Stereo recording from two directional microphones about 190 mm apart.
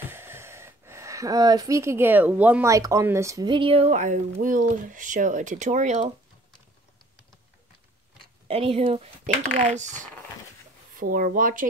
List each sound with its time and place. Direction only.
0.1 s speech: 10° right (ahead or behind); by 6.1 s 35° right (ahead or behind)
8.5 s speech: 30° right (ahead or behind)
11.0 s speech: 50° right (ahead or behind)